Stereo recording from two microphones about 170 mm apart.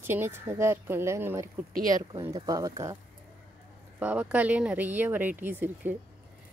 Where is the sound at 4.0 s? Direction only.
10° right (ahead or behind).